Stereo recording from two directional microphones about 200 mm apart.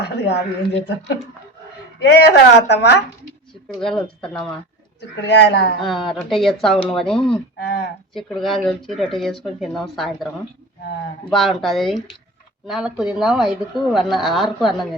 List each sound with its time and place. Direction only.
0.0 s a sound: 55° left (ahead or behind)
0.9 s speech: 55° left (ahead or behind)
4.2 s speech: 5° left (ahead or behind)
4.9 s speech: 55° left (ahead or behind)
5.9 s speech: centre (ahead or behind)
7.6 s a sound: 55° left (ahead or behind)
8.1 s speech: centre (ahead or behind)
11.3 s speech: centre (ahead or behind)